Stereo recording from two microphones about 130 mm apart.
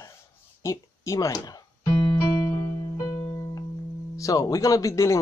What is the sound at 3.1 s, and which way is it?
Music, 25° left (ahead or behind).